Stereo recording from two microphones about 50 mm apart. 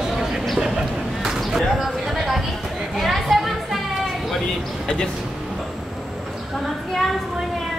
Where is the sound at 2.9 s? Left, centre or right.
Centre.